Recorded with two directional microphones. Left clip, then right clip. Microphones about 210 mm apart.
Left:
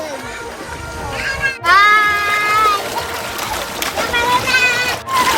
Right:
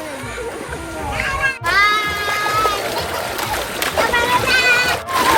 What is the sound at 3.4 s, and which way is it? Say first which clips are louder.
Splash: even; centre (ahead or behind).